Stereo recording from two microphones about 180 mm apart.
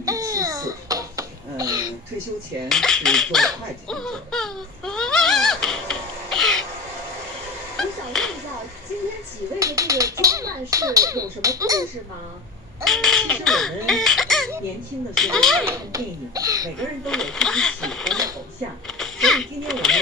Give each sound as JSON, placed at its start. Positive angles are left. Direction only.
{"t": 0.0, "sound": "babbling", "side_deg": -20}
{"t": 2.7, "sound": "speech", "side_deg": 5}
{"t": 7.7, "sound": "a sound", "side_deg": 5}
{"t": 9.6, "sound": "speech", "side_deg": -20}
{"t": 12.8, "sound": "speech", "side_deg": 0}
{"t": 13.8, "sound": "chicken", "side_deg": 0}
{"t": 15.1, "sound": "speech", "side_deg": 5}
{"t": 15.6, "sound": "speech", "side_deg": -15}
{"t": 17.0, "sound": "speech", "side_deg": 5}
{"t": 18.9, "sound": "a sound", "side_deg": 5}